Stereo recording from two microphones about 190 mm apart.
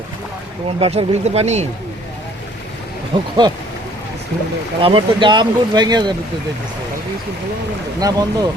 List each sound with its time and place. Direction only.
0.8 s speech: 30° right (ahead or behind)
3.1 s speech: 25° right (ahead or behind)
4.8 s speech: 30° right (ahead or behind)
7.9 s speech: 20° right (ahead or behind)